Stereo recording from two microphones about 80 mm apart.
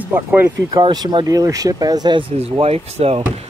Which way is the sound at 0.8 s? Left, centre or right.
Right.